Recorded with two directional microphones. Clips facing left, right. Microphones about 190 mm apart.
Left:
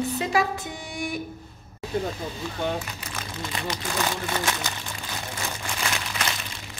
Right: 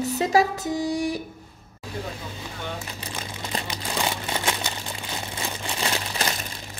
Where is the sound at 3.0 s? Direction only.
30° right (ahead or behind).